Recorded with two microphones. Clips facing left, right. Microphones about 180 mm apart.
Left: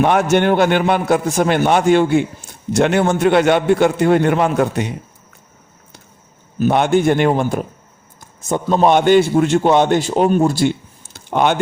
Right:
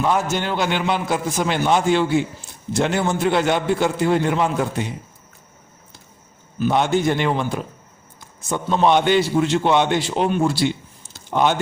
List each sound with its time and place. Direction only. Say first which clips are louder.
0.0 s a man's voice: left 7 dB; 70° left (ahead or behind)
6.6 s a man's voice: left 4 dB; 55° left (ahead or behind)